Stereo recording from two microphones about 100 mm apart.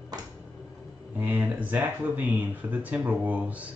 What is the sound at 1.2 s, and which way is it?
Speech, 20° right (ahead or behind).